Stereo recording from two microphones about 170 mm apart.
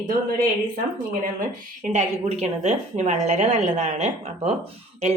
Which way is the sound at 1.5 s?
45° right (ahead or behind).